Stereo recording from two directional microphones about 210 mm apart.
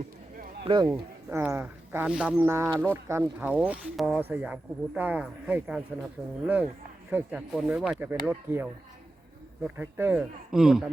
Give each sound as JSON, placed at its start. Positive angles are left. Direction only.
{"t": 0.6, "sound": "speech", "side_deg": -20}
{"t": 0.9, "sound": "speech", "side_deg": -10}